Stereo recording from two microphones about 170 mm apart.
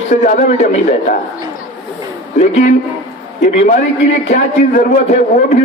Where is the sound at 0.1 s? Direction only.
45° left (ahead or behind).